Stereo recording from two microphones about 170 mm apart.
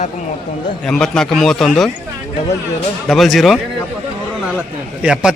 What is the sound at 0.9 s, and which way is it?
A man's voice, 5° left (ahead or behind).